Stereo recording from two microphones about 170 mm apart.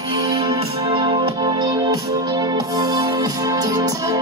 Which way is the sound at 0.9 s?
30° right (ahead or behind).